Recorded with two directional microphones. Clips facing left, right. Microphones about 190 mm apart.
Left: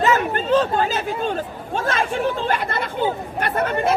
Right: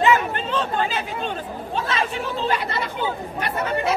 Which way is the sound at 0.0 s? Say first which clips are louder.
Even; 40° left (ahead or behind).